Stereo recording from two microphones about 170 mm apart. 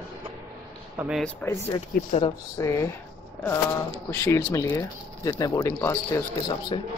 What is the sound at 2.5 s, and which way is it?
Speech, 15° left (ahead or behind).